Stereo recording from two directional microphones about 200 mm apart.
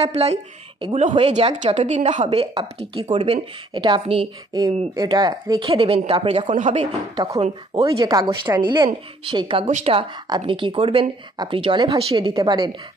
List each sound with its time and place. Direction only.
0.0 s a woman's voice: 30° right (ahead or behind)